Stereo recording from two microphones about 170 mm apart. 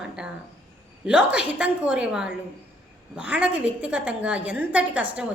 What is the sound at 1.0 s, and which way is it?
A woman's voice, 5° right (ahead or behind).